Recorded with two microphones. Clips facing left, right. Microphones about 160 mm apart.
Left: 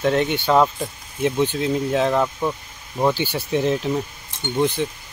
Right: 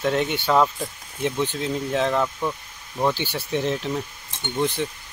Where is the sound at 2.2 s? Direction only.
15° left (ahead or behind).